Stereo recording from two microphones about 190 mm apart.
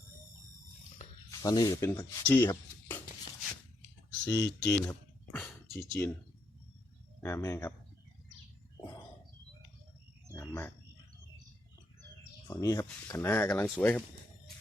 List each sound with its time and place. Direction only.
1.3 s speech: 20° left (ahead or behind)
4.3 s speech: 20° left (ahead or behind)
5.3 s a sound: 5° left (ahead or behind)
7.2 s speech: 15° left (ahead or behind)
10.3 s a sound: 15° left (ahead or behind)
12.5 s speech: 15° left (ahead or behind)